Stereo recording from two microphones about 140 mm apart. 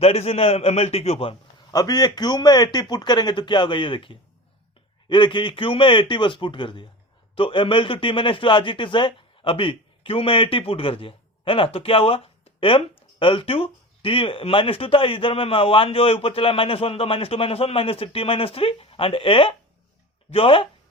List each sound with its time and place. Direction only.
0.0 s a man's voice: 45° left (ahead or behind)
1.7 s a man's voice: 30° left (ahead or behind)